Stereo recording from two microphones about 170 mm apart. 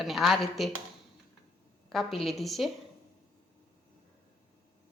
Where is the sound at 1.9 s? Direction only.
Centre (ahead or behind).